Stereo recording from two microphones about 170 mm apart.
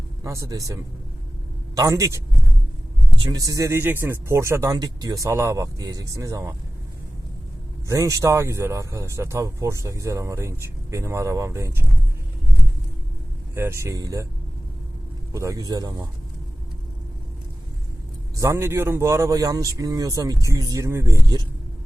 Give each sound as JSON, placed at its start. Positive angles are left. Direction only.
{"t": 0.2, "sound": "speech", "side_deg": -20}
{"t": 7.9, "sound": "speech", "side_deg": -20}
{"t": 13.6, "sound": "speech", "side_deg": -15}
{"t": 15.3, "sound": "speech", "side_deg": -20}
{"t": 18.3, "sound": "speech", "side_deg": -15}